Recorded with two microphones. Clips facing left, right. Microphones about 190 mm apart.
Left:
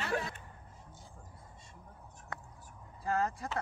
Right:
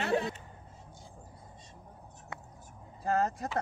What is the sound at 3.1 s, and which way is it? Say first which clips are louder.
Vehicle: right 3 dB; 40° right (ahead or behind).